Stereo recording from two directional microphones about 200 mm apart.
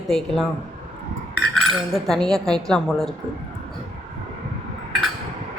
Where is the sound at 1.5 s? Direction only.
Centre (ahead or behind).